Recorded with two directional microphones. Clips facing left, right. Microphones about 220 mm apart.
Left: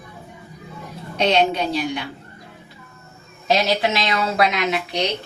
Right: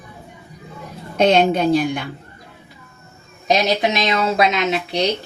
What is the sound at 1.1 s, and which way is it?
Speech, 50° right (ahead or behind).